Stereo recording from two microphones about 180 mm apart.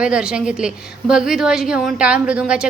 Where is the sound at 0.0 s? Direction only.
5° right (ahead or behind).